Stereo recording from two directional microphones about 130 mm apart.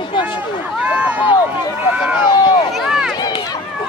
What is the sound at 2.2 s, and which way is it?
Run, 35° left (ahead or behind).